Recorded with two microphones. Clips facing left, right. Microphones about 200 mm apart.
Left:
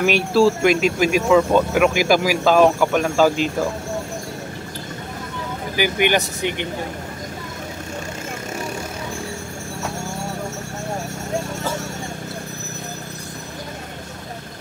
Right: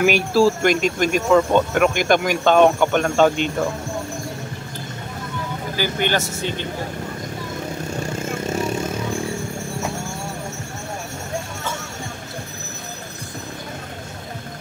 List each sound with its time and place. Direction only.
0.0 s speech: centre (ahead or behind)
5.8 s speech: 15° left (ahead or behind)